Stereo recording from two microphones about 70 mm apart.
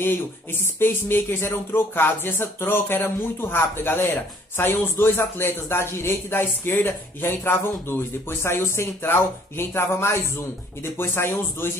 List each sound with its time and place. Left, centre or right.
0.0 s speech: left